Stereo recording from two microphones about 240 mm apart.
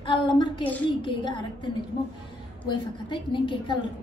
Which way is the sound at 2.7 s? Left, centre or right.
Centre.